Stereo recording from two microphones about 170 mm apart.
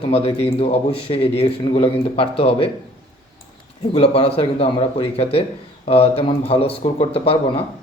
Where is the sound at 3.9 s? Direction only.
35° left (ahead or behind).